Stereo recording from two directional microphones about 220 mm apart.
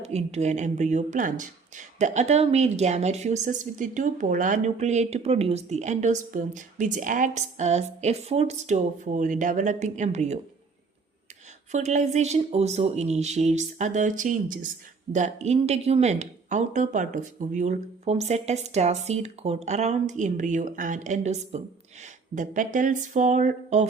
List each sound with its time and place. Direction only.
0.0 s speech: 30° right (ahead or behind)
11.7 s speech: 30° right (ahead or behind)